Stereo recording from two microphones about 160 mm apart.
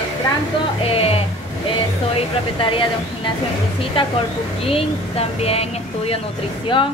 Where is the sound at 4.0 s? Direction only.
35° left (ahead or behind).